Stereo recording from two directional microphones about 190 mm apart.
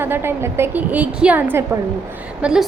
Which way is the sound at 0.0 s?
10° right (ahead or behind).